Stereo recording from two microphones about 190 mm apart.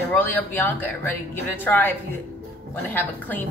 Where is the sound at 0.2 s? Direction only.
10° left (ahead or behind).